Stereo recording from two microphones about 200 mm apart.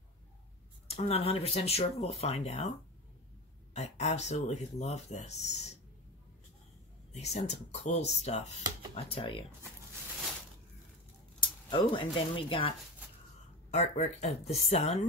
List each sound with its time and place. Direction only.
0.8 s speech: 30° left (ahead or behind)
3.7 s speech: 35° left (ahead or behind)
7.1 s speech: 35° left (ahead or behind)
11.3 s speech: 25° left (ahead or behind)